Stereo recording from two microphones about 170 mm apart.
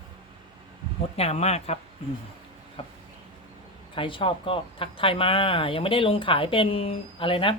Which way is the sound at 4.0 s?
30° left (ahead or behind).